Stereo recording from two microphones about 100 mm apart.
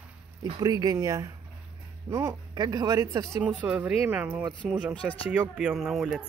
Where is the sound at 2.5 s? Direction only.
40° right (ahead or behind).